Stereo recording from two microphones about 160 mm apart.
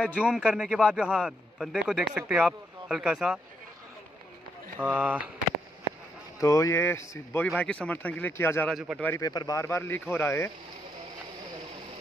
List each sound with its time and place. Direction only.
0.0 s speech: 10° left (ahead or behind)
0.3 s speech: 5° right (ahead or behind)
4.7 s speech: 10° right (ahead or behind)
6.4 s speech: 20° left (ahead or behind)
8.6 s speech: centre (ahead or behind)
9.0 s speech: 15° left (ahead or behind)